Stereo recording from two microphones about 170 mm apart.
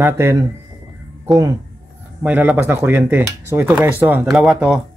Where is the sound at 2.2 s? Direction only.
10° right (ahead or behind).